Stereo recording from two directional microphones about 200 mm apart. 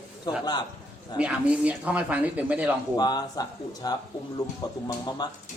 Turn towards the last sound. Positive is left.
turn(degrees=20)  # may be behind; listen again after turning